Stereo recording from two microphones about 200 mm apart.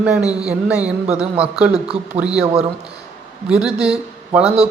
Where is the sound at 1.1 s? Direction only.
30° right (ahead or behind).